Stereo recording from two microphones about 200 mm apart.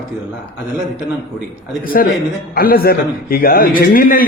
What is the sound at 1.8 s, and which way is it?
A man's voice, 45° left (ahead or behind).